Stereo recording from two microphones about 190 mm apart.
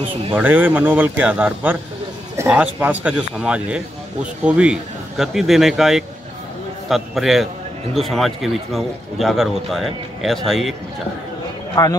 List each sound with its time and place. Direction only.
0.3 s speech: 10° right (ahead or behind)
11.8 s a man's voice: 20° left (ahead or behind)